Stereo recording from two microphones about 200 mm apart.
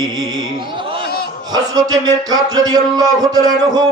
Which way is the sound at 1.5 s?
20° right (ahead or behind).